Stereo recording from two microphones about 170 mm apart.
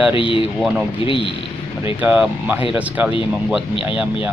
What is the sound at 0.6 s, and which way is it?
Speech, centre (ahead or behind).